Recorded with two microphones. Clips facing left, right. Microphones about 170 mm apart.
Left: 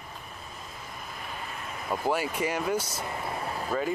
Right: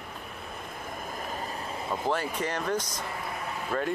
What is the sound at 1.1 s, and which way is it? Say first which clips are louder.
Vehicle: right 3 dB; 40° right (ahead or behind).